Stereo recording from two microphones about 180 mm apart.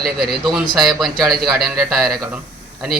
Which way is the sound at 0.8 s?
Centre (ahead or behind).